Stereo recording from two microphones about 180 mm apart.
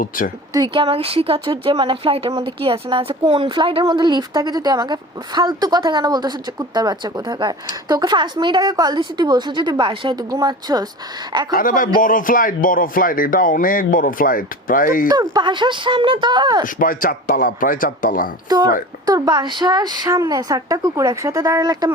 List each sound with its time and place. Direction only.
0.5 s speech: 25° right (ahead or behind)
11.5 s speech: 50° left (ahead or behind)
15.0 s speech: 20° right (ahead or behind)
16.6 s speech: 50° left (ahead or behind)
19.0 s speech: 20° right (ahead or behind)